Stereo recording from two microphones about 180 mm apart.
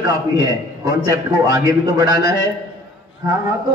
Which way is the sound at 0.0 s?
20° right (ahead or behind).